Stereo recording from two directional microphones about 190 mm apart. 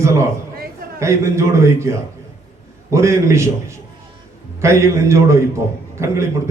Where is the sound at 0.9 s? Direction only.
15° right (ahead or behind).